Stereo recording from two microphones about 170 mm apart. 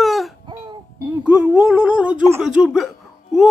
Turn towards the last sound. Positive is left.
turn(degrees=0)  # may be behind; listen again after turning